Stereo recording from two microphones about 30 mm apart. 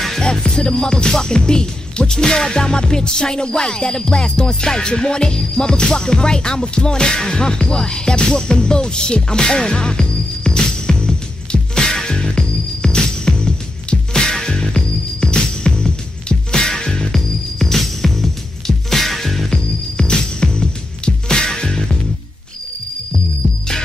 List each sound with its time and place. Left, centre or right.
0.2 s music: left
17.1 s music: centre
19.5 s music: left